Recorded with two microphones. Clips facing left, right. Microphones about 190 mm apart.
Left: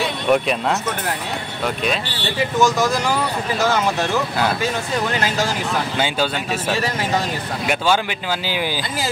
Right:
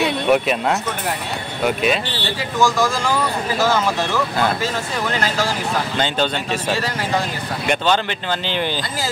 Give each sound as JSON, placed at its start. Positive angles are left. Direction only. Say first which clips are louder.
{"t": 0.3, "sound": "speech", "louder": "left 1 dB", "side_deg": 0}
{"t": 2.6, "sound": "speech", "louder": "even", "side_deg": 20}
{"t": 5.9, "sound": "speech", "louder": "right 1 dB", "side_deg": 5}
{"t": 7.6, "sound": "speech", "louder": "right 1 dB", "side_deg": 10}